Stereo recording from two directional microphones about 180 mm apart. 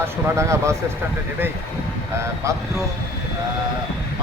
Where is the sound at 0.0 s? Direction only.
15° right (ahead or behind).